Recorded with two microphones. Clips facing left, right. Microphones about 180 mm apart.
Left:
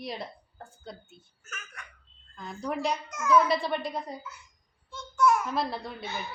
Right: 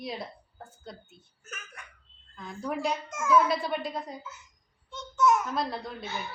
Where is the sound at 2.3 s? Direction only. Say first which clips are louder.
Even; centre (ahead or behind).